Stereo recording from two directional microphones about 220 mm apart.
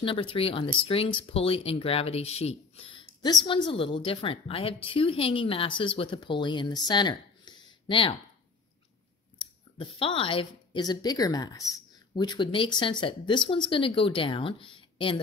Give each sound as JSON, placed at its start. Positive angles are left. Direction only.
{"t": 0.0, "sound": "a woman's voice", "side_deg": 25}
{"t": 9.4, "sound": "speech", "side_deg": 25}